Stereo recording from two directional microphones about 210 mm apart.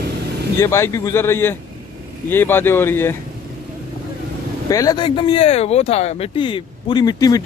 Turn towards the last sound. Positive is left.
turn(degrees=20)  # may be behind; listen again after turning